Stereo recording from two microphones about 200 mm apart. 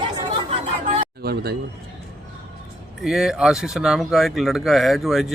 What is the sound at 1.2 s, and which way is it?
Speech, 50° right (ahead or behind).